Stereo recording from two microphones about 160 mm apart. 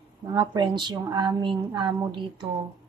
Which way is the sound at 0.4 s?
30° right (ahead or behind).